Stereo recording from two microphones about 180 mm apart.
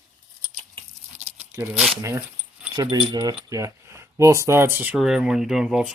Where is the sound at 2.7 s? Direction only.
25° right (ahead or behind).